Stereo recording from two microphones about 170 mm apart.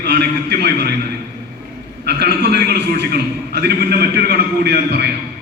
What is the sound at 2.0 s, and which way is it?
A man's voice, 75° right (ahead or behind).